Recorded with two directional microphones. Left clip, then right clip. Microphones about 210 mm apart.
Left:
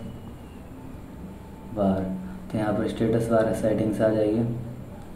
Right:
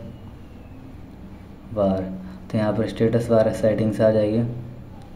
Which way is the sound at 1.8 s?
45° right (ahead or behind).